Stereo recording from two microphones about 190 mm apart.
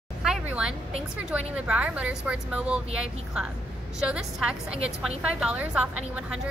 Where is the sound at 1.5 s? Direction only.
5° right (ahead or behind).